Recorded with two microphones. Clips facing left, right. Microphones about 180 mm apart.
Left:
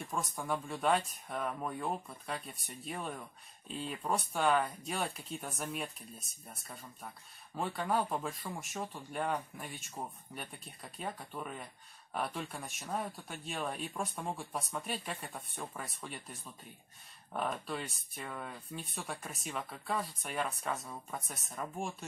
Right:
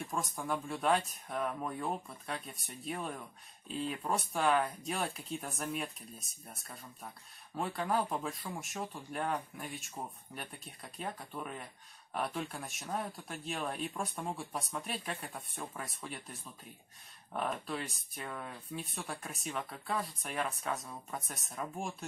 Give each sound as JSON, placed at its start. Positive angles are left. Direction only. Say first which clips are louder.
{"t": 0.0, "sound": "speech", "louder": "right 1 dB", "side_deg": 0}